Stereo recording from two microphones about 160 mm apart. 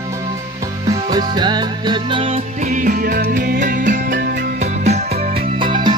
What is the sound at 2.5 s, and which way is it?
Music, 50° right (ahead or behind).